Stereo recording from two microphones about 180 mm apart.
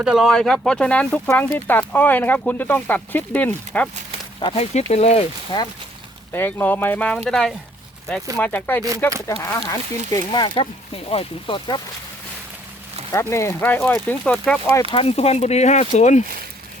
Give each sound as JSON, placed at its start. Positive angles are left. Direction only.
{"t": 0.0, "sound": "speech", "side_deg": 0}
{"t": 4.4, "sound": "speech", "side_deg": 25}
{"t": 4.7, "sound": "speech", "side_deg": 35}
{"t": 5.5, "sound": "speech", "side_deg": 25}
{"t": 6.3, "sound": "speech", "side_deg": 10}
{"t": 13.1, "sound": "speech", "side_deg": 15}
{"t": 14.8, "sound": "speech", "side_deg": 30}